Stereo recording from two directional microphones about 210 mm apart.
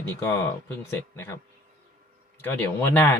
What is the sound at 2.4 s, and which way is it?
Speech, 10° left (ahead or behind).